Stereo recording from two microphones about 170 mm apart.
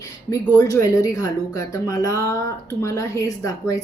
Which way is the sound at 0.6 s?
20° left (ahead or behind).